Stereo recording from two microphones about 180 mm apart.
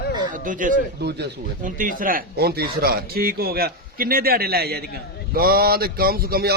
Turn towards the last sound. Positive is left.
turn(degrees=-60)  # may be behind; listen again after turning